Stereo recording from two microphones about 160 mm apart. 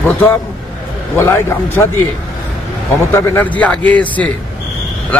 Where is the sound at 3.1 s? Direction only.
15° left (ahead or behind).